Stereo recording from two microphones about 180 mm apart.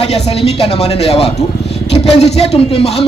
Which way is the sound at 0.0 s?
35° left (ahead or behind).